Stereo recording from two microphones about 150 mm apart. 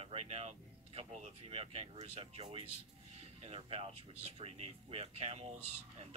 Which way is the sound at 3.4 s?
40° right (ahead or behind).